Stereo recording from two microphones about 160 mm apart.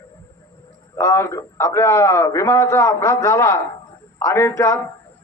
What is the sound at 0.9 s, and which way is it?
A man's voice, 15° left (ahead or behind).